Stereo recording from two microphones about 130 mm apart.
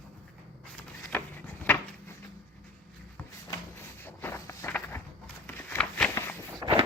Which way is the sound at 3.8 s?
20° left (ahead or behind).